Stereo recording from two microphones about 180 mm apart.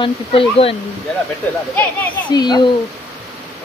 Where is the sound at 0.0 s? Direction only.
30° left (ahead or behind).